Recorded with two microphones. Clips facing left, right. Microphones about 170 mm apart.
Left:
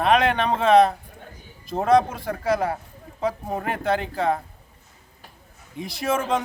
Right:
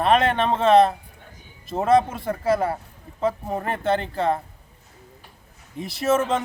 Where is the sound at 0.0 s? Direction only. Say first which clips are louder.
Even; centre (ahead or behind).